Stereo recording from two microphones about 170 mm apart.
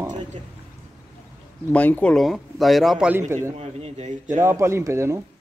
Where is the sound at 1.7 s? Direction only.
10° left (ahead or behind).